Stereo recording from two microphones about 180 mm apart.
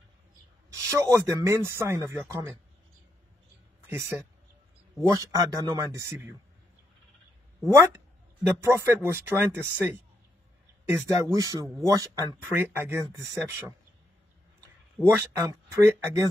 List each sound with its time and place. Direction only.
0.7 s a man's voice: 15° right (ahead or behind)
3.8 s a man's voice: 15° right (ahead or behind)
7.6 s a man's voice: 15° right (ahead or behind)
15.0 s a man's voice: 15° right (ahead or behind)